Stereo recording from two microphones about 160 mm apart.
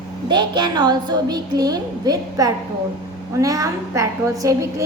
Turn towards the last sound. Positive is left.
turn(degrees=-20)  # may be behind; listen again after turning